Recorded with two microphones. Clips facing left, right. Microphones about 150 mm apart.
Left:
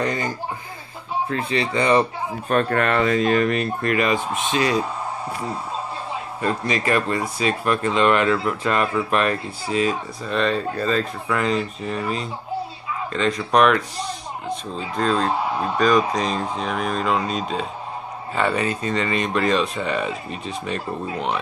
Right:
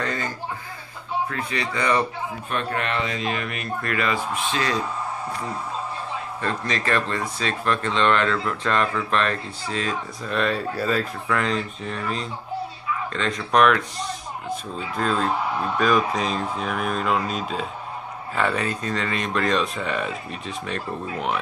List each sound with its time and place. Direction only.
0.0 s speech: 15° left (ahead or behind)
1.3 s speech: 25° left (ahead or behind)
2.5 s speech: 50° left (ahead or behind)
3.8 s speech: 20° left (ahead or behind)
6.4 s speech: 10° left (ahead or behind)
10.3 s speech: centre (ahead or behind)
13.1 s speech: centre (ahead or behind)